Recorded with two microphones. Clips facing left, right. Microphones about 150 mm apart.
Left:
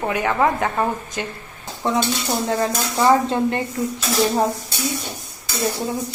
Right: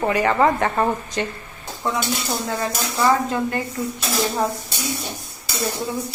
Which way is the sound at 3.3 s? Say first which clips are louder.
Left 3 dB; 25° left (ahead or behind).